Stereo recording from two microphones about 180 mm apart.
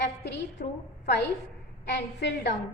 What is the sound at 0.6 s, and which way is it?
Speech, 60° left (ahead or behind).